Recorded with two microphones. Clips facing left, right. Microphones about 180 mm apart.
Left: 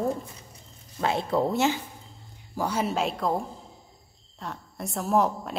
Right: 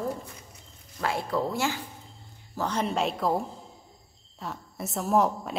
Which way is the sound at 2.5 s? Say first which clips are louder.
Left 1 dB; 10° left (ahead or behind).